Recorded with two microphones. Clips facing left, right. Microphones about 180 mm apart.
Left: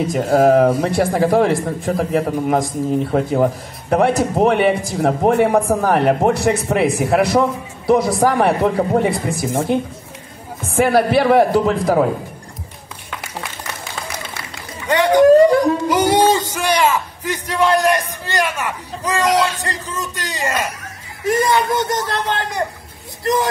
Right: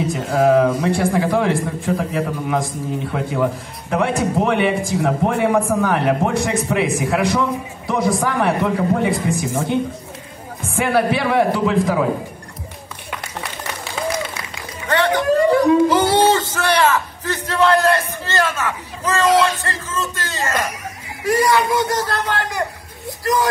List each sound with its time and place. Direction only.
0.1 s speech: 40° left (ahead or behind)
10.8 s speech: 40° left (ahead or behind)
14.9 s a sound: 15° left (ahead or behind)
21.2 s a man's voice: 20° left (ahead or behind)